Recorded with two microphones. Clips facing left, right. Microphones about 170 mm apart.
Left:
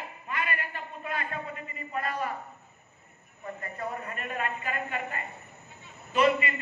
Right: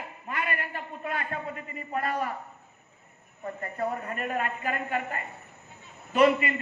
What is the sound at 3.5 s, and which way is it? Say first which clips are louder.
A man's voice: right 5 dB; 40° right (ahead or behind).